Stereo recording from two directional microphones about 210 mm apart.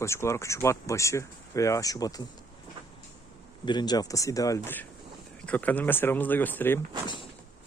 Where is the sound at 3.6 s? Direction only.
20° left (ahead or behind).